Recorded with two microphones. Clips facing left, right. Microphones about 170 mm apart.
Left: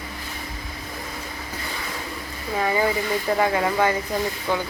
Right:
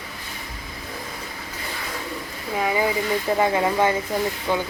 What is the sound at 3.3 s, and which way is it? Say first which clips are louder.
Speech: right 1 dB; 20° right (ahead or behind).